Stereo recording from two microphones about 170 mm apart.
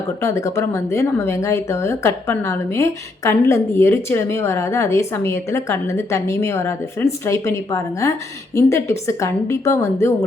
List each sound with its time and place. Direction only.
0.2 s speech: 15° left (ahead or behind)